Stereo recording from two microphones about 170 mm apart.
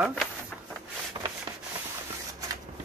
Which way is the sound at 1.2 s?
25° right (ahead or behind).